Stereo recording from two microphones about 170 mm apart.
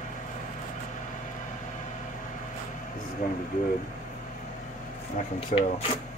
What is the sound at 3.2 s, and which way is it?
Speech, 55° left (ahead or behind).